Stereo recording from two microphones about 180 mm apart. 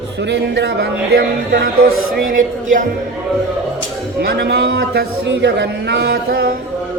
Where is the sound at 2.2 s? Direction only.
50° right (ahead or behind).